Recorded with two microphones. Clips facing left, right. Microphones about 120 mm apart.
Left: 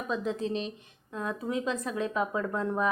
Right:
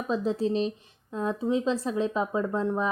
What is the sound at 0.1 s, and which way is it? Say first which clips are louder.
A woman's voice: right 5 dB; 35° right (ahead or behind).